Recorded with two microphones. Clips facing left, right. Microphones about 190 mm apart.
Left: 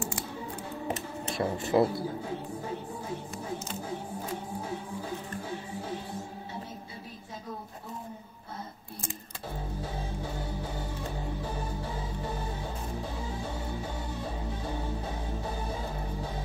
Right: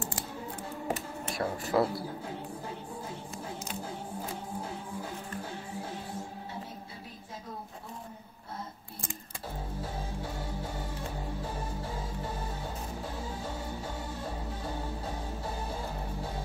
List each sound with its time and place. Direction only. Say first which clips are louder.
0.8 s speech: even; 20° left (ahead or behind)